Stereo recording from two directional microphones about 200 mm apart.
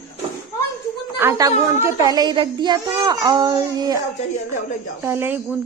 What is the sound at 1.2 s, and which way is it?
A child's voice, 10° right (ahead or behind).